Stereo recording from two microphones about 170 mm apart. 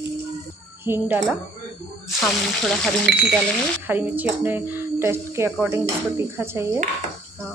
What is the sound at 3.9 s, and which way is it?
Speech, 10° right (ahead or behind).